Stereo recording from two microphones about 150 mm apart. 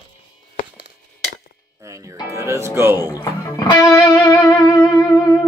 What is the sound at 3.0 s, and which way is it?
Speech, 25° left (ahead or behind).